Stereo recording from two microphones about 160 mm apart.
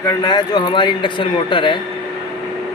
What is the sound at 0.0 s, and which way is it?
A man's voice, 25° left (ahead or behind).